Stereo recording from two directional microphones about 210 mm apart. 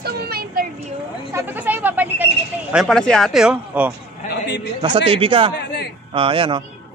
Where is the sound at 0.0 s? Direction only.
45° right (ahead or behind).